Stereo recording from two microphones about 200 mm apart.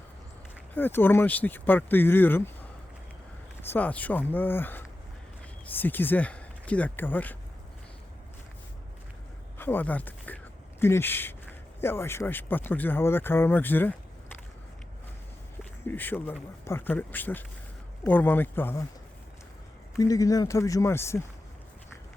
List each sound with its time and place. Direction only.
0.7 s speech: 10° left (ahead or behind)
3.6 s speech: 10° left (ahead or behind)
9.6 s speech: 10° left (ahead or behind)
15.9 s speech: 10° left (ahead or behind)
20.0 s speech: 15° left (ahead or behind)